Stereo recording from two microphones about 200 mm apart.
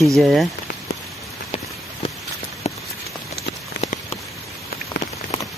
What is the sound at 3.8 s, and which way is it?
Patter, 35° left (ahead or behind).